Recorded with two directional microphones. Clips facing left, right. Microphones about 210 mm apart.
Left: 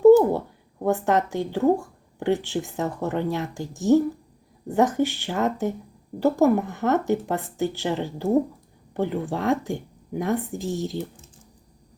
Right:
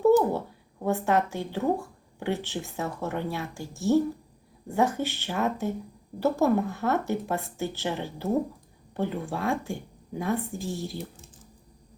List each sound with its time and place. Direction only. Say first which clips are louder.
0.2 s speech: left 5 dB; 15° left (ahead or behind)